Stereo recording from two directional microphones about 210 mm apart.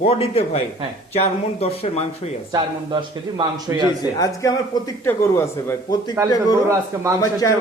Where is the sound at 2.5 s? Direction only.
20° right (ahead or behind).